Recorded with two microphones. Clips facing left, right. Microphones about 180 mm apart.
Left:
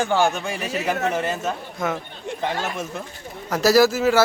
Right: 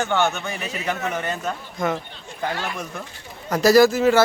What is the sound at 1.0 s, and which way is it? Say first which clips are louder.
Speech: left 4 dB; 35° left (ahead or behind).